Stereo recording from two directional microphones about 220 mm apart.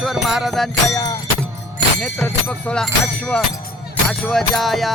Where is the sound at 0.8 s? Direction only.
15° left (ahead or behind).